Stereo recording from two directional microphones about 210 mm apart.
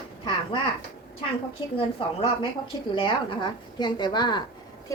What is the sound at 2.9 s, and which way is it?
A woman's voice, 25° left (ahead or behind).